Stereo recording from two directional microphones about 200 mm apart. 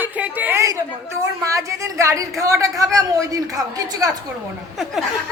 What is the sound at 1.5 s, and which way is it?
Speech, 15° right (ahead or behind).